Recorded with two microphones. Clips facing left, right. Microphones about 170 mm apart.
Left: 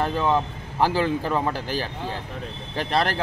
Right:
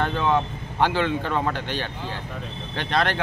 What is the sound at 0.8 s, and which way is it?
Speech, 35° left (ahead or behind).